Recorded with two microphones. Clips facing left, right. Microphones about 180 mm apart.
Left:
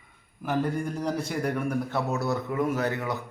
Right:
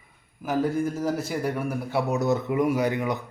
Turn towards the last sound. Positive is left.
turn(degrees=-15)  # may be behind; listen again after turning